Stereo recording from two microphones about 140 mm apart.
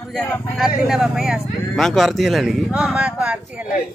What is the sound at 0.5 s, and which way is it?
Speech, centre (ahead or behind).